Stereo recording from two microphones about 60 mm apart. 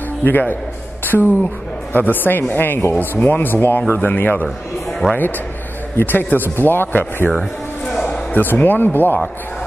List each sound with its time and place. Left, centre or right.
0.2 s speech: left
1.0 s a sound: left
2.0 s speech: left
5.0 s speech: right
5.9 s speech: left
7.3 s music: centre
8.3 s speech: left